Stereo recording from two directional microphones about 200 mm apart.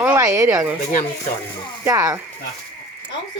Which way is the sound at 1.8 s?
15° right (ahead or behind).